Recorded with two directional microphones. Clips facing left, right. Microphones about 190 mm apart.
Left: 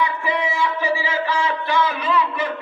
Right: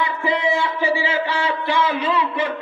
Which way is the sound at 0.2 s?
25° right (ahead or behind).